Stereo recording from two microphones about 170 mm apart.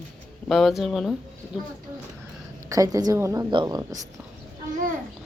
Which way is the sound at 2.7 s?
20° right (ahead or behind).